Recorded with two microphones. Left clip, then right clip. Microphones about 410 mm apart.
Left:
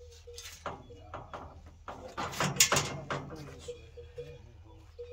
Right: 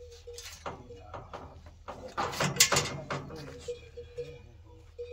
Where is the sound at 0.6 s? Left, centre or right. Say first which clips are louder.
Left 1 dB; centre.